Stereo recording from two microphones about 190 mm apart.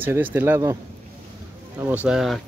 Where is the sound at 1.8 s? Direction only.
10° right (ahead or behind).